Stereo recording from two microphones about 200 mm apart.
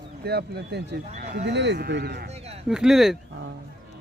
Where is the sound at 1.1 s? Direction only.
35° right (ahead or behind).